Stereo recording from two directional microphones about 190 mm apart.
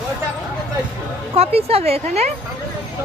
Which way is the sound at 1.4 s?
30° right (ahead or behind).